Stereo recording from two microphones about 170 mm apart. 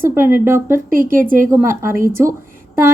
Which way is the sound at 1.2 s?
55° right (ahead or behind).